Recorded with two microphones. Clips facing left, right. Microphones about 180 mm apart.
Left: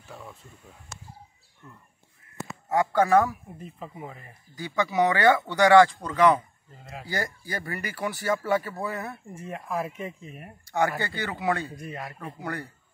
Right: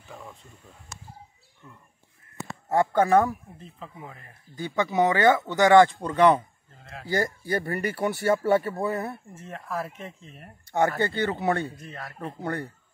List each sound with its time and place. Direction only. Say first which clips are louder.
0.1 s speech: even; 5° left (ahead or behind)
2.7 s speech: right 1 dB; 25° right (ahead or behind)
3.5 s speech: left 3 dB; 5° left (ahead or behind)
4.9 s speech: right 1 dB; 20° right (ahead or behind)
6.8 s speech: left 2 dB; 5° left (ahead or behind)
7.1 s speech: right 6 dB; 25° right (ahead or behind)
9.3 s speech: left 2 dB; 10° left (ahead or behind)
10.7 s speech: right 3 dB; 25° right (ahead or behind)
11.8 s speech: left 3 dB; 15° left (ahead or behind)